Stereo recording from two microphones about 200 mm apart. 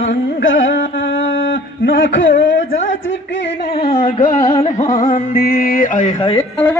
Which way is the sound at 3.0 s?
65° left (ahead or behind).